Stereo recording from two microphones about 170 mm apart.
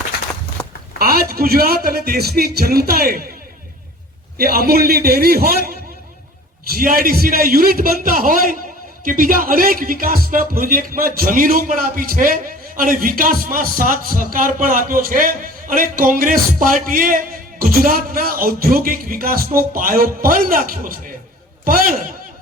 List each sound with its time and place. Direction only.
0.9 s speech: 60° right (ahead or behind)
4.4 s speech: 60° right (ahead or behind)
6.7 s a man's voice: 55° right (ahead or behind)